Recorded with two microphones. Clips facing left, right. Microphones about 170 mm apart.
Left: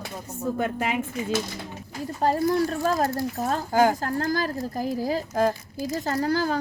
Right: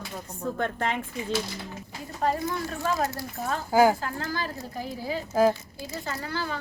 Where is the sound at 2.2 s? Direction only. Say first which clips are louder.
Left 6 dB; 35° left (ahead or behind).